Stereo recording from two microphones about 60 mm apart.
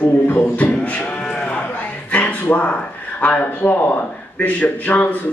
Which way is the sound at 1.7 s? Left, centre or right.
Left.